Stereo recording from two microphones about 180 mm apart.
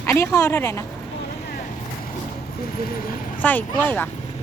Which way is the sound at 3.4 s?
10° left (ahead or behind).